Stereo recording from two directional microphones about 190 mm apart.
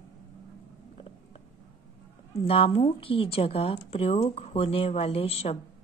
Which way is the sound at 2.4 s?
30° left (ahead or behind).